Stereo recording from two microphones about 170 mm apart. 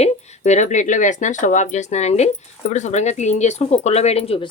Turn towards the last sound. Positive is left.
turn(degrees=35)  # may be behind; listen again after turning